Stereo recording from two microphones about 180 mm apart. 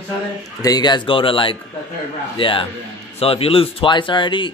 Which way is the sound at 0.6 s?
20° left (ahead or behind).